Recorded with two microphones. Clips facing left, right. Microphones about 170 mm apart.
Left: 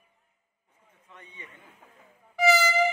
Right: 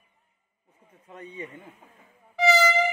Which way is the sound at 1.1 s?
40° right (ahead or behind).